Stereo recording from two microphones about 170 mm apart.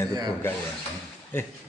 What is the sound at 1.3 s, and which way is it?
Speech, 10° left (ahead or behind).